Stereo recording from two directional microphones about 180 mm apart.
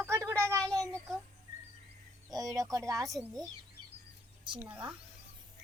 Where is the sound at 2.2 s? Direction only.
20° right (ahead or behind).